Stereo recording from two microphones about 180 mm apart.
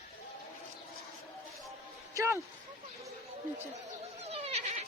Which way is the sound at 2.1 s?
15° right (ahead or behind).